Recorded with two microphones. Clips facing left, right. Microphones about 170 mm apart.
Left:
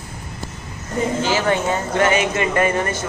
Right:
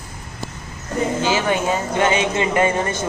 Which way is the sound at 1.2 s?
15° right (ahead or behind).